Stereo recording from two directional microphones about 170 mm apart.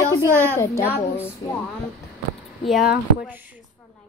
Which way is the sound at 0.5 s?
15° left (ahead or behind).